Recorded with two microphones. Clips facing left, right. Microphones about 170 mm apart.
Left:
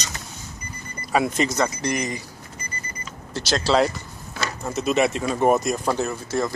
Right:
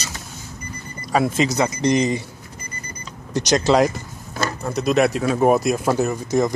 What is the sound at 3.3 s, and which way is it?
Speech, 15° right (ahead or behind).